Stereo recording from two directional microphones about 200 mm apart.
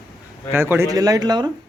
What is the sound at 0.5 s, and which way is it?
Speech, 10° right (ahead or behind).